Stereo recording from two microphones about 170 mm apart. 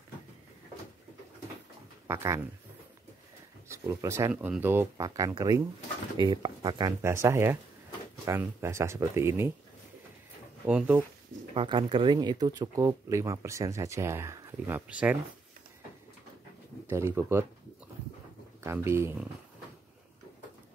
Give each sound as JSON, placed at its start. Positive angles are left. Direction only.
{"t": 2.0, "sound": "speech", "side_deg": -15}
{"t": 3.6, "sound": "speech", "side_deg": -15}
{"t": 10.7, "sound": "speech", "side_deg": -5}
{"t": 11.5, "sound": "speech", "side_deg": -30}
{"t": 16.9, "sound": "speech", "side_deg": -15}
{"t": 18.6, "sound": "speech", "side_deg": -15}